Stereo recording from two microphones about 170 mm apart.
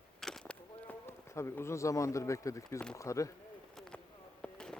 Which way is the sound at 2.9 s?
20° left (ahead or behind).